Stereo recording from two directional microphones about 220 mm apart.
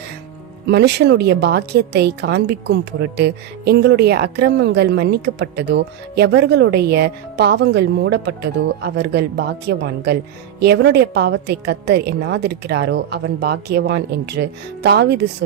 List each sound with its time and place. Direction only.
0.7 s a woman's voice: 50° right (ahead or behind)